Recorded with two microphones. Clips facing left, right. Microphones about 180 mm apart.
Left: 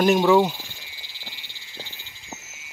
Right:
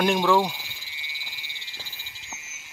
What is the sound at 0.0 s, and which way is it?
Speech, 5° left (ahead or behind).